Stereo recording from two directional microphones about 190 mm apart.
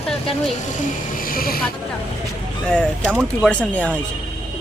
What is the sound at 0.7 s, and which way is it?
Speech, 50° left (ahead or behind).